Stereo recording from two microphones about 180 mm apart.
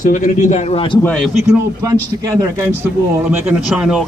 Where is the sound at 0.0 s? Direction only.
45° left (ahead or behind).